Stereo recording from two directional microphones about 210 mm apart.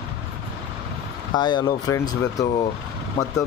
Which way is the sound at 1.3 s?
20° left (ahead or behind).